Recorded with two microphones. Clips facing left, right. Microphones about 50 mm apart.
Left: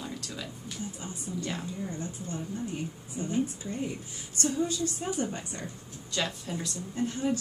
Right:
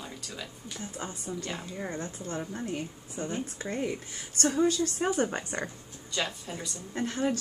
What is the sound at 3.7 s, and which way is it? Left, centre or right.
A woman's voice, right.